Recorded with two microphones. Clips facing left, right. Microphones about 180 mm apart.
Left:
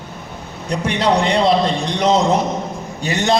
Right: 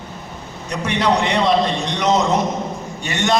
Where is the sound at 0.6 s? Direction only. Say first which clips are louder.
Left 1 dB; 30° left (ahead or behind).